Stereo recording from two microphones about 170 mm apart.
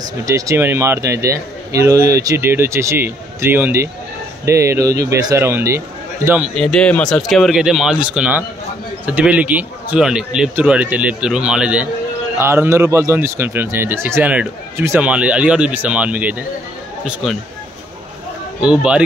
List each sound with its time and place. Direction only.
0.0 s speech: 20° right (ahead or behind)
6.5 s speech: 5° left (ahead or behind)
18.6 s speech: 5° right (ahead or behind)